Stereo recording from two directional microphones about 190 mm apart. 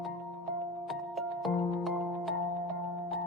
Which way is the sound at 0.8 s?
Centre (ahead or behind).